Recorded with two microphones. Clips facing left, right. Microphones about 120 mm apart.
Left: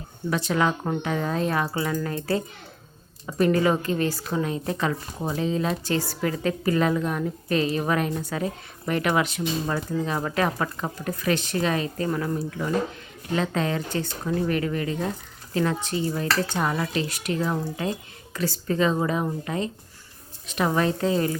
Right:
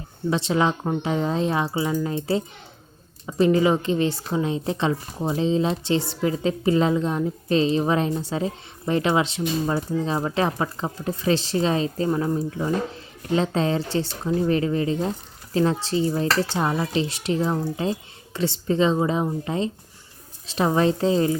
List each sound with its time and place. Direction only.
0.3 s a woman's voice: 25° right (ahead or behind)